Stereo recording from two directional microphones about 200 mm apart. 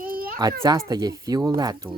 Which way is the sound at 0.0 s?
45° right (ahead or behind).